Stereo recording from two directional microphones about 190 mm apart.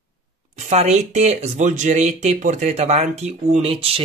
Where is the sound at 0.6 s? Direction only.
35° right (ahead or behind).